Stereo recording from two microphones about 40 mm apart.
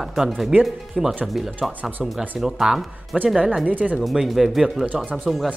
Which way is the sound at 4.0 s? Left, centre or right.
Centre.